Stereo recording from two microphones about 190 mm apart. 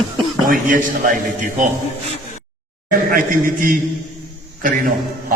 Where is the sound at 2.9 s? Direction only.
45° right (ahead or behind).